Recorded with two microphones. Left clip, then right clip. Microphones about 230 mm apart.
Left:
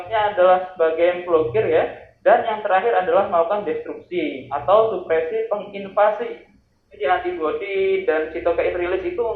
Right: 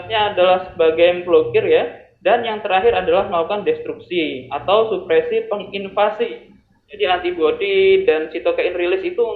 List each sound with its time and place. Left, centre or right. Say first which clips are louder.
0.1 s speech: right 1 dB; right